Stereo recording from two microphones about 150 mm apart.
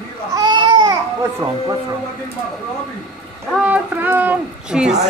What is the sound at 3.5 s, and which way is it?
A woman's voice, 10° right (ahead or behind).